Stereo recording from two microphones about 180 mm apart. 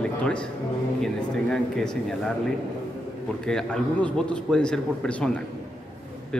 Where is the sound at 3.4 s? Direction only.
5° left (ahead or behind).